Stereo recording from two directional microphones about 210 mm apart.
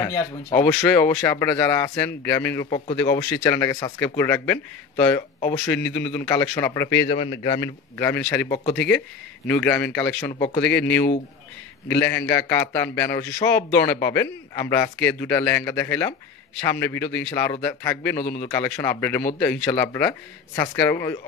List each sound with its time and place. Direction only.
0.0 s speech: 15° left (ahead or behind)
2.6 s speech: 20° left (ahead or behind)
7.1 s a man's voice: 25° left (ahead or behind)
7.6 s speech: 10° left (ahead or behind)